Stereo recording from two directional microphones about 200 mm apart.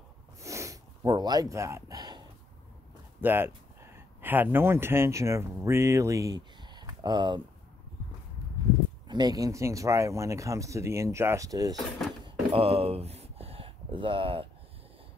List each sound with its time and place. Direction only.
0.4 s snort: 15° right (ahead or behind)
3.2 s speech: 10° right (ahead or behind)
9.0 s speech: 20° right (ahead or behind)
12.3 s a sound: 30° right (ahead or behind)